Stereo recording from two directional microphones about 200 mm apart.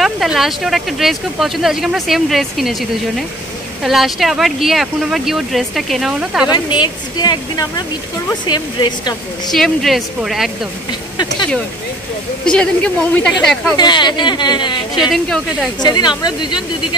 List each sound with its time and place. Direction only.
0.0 s speech: centre (ahead or behind)
6.5 s speech: 20° left (ahead or behind)
9.5 s speech: centre (ahead or behind)
10.9 s speech: 20° left (ahead or behind)
12.4 s speech: 5° left (ahead or behind)
13.7 s speech: 20° left (ahead or behind)
15.0 s speech: centre (ahead or behind)
15.8 s speech: 20° left (ahead or behind)